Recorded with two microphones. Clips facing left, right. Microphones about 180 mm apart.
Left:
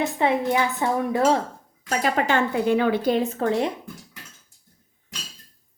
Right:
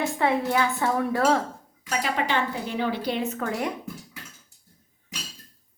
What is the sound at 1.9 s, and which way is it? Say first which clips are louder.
Speech: left 4 dB; 45° left (ahead or behind).